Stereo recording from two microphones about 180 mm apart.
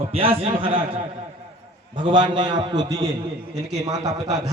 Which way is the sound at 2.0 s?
25° right (ahead or behind).